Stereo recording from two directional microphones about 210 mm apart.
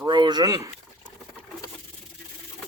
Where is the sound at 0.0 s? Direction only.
20° right (ahead or behind).